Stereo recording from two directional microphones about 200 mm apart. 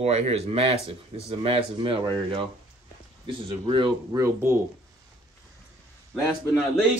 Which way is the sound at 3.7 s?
25° right (ahead or behind).